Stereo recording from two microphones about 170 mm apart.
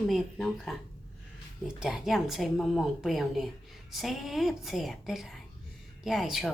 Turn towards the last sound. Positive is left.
turn(degrees=0)  # may be behind; listen again after turning